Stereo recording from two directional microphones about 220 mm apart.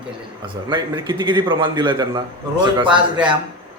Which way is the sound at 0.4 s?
20° right (ahead or behind).